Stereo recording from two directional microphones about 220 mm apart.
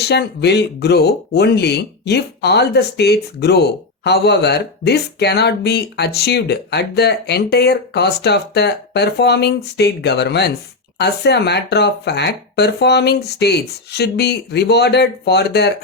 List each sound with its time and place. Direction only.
0.0 s speech: 50° left (ahead or behind)